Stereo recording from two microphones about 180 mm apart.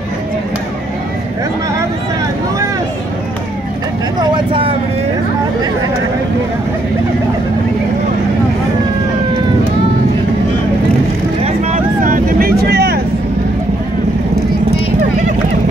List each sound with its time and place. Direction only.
4.2 s vehicle: 25° right (ahead or behind)
11.4 s vehicle: 40° right (ahead or behind); by 13.0 s 60° right (ahead or behind)